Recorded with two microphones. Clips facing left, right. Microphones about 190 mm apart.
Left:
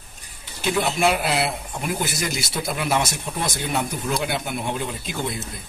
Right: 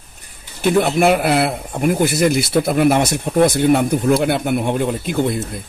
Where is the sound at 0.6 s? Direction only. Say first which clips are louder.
Right 7 dB; 55° right (ahead or behind).